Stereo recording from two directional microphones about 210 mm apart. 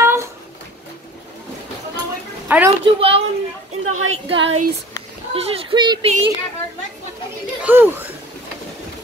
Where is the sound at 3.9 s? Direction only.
80° right.